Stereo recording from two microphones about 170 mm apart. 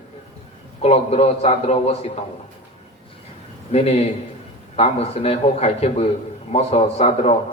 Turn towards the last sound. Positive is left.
turn(degrees=35)  # may be behind; listen again after turning